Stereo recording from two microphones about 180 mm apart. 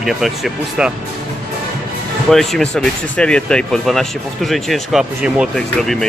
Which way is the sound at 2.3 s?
Centre (ahead or behind).